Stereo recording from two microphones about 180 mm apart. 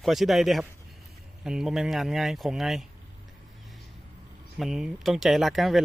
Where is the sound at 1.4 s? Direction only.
5° right (ahead or behind).